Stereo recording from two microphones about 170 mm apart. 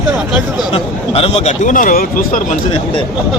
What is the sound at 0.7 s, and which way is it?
Speech, 35° left (ahead or behind).